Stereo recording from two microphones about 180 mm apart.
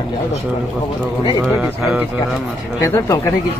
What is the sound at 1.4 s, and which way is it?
Speech, centre (ahead or behind).